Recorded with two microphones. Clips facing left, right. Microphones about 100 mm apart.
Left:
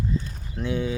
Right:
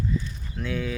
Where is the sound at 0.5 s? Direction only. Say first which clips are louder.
Left 3 dB; 25° left (ahead or behind).